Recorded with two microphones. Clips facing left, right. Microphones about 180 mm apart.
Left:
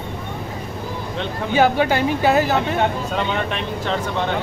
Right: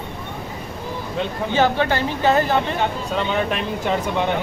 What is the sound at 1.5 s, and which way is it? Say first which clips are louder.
Speech: left 3 dB; 10° left (ahead or behind).